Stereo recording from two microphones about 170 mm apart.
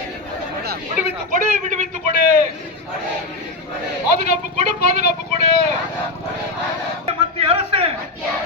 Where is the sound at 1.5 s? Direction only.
45° right (ahead or behind).